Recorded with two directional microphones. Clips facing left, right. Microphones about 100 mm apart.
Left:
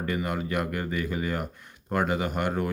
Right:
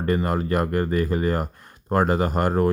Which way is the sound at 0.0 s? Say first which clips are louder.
Right 6 dB; 40° right (ahead or behind).